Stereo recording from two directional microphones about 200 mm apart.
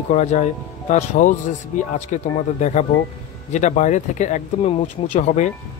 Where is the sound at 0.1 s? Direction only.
35° left (ahead or behind).